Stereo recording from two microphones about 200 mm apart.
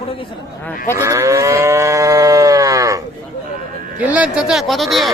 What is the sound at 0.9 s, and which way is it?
Moo, 15° right (ahead or behind).